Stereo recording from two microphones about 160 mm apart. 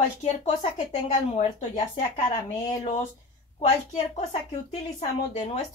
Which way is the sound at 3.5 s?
45° left (ahead or behind).